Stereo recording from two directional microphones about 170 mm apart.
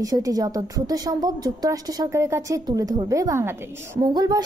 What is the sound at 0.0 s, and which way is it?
A woman's voice, 20° right (ahead or behind).